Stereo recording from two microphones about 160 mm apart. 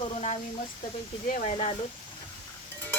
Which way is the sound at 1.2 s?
55° left (ahead or behind).